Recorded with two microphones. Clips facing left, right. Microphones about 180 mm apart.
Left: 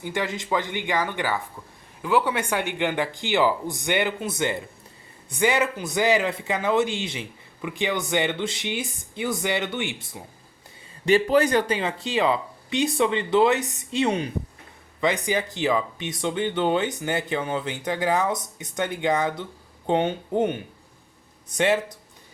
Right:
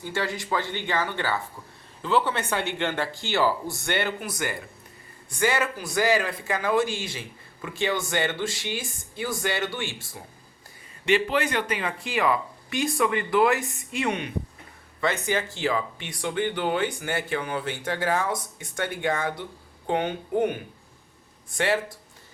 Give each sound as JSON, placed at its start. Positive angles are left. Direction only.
{"t": 0.0, "sound": "a man's voice", "side_deg": 15}
{"t": 11.0, "sound": "a man's voice", "side_deg": 40}
{"t": 15.0, "sound": "a man's voice", "side_deg": 15}